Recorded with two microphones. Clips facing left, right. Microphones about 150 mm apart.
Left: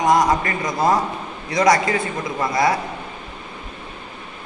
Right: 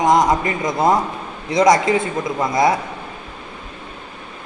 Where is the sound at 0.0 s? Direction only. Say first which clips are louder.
Right 2 dB; 20° right (ahead or behind).